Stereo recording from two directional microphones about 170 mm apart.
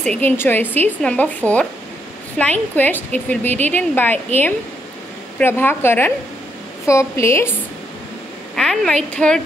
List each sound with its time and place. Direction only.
0.0 s a woman's voice: 10° left (ahead or behind)
8.5 s a woman's voice: 5° left (ahead or behind)